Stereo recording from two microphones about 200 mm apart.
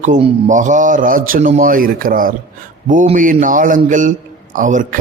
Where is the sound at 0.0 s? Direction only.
35° right (ahead or behind).